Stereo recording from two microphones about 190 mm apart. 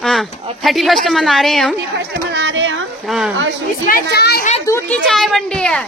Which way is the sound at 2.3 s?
70° right (ahead or behind).